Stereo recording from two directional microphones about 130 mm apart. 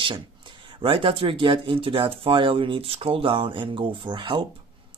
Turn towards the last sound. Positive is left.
turn(degrees=-40)  # may be behind; listen again after turning